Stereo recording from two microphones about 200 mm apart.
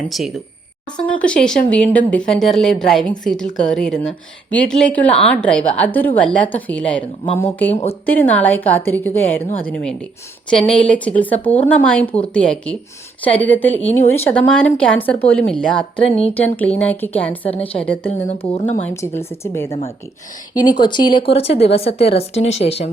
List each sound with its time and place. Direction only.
0.1 s a woman's voice: centre (ahead or behind)
8.0 s a woman's voice: 10° left (ahead or behind)
13.2 s a woman's voice: 10° left (ahead or behind)
13.9 s speech: 35° left (ahead or behind)
14.3 s a woman's voice: 10° left (ahead or behind)
17.5 s a woman's voice: 30° left (ahead or behind)
17.8 s a woman's voice: 10° left (ahead or behind); by 22.9 s 30° left (ahead or behind)